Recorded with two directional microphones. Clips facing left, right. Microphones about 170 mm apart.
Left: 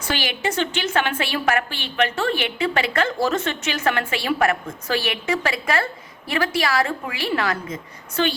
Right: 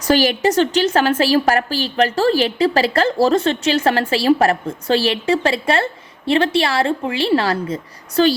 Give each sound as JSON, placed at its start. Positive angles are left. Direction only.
{"t": 0.0, "sound": "a woman's voice", "side_deg": -40}